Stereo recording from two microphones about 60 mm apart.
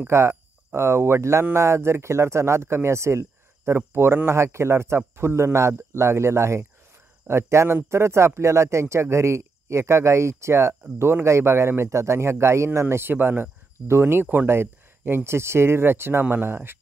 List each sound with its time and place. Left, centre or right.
0.0 s speech: right
14.2 s speech: right